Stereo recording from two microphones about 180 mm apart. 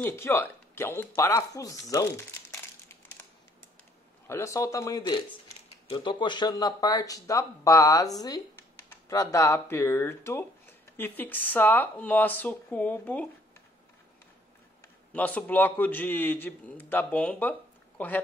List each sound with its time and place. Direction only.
0.0 s a man's voice: 15° left (ahead or behind)
4.3 s a man's voice: 15° left (ahead or behind)
15.1 s a man's voice: 10° left (ahead or behind)